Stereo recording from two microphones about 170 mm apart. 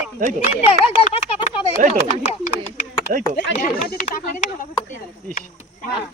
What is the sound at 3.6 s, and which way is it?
Speech, 50° left (ahead or behind).